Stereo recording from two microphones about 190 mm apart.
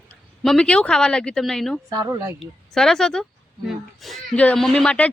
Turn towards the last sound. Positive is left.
turn(degrees=5)  # may be behind; listen again after turning